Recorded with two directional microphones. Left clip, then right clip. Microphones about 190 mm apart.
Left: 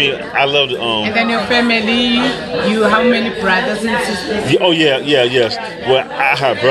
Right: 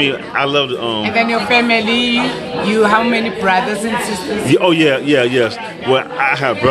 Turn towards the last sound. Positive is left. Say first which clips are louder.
# left 1 dB
turn(degrees=-20)  # may be behind; listen again after turning